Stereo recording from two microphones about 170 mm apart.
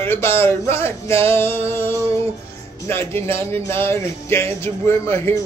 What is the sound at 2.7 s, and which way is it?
Music, 15° left (ahead or behind).